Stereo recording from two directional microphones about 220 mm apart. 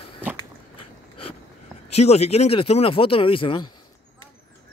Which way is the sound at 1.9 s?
30° left (ahead or behind).